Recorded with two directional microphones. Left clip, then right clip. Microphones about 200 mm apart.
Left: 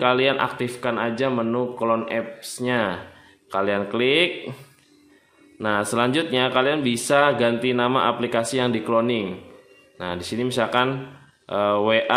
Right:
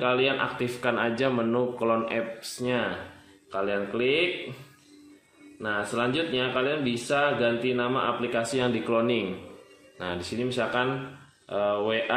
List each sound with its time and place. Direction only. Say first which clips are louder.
0.0 s a man's voice: left 5 dB; 30° left (ahead or behind)
5.6 s a man's voice: left 6 dB; 30° left (ahead or behind)